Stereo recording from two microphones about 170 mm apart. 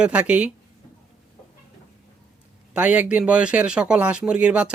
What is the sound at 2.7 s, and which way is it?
Speech, 10° right (ahead or behind).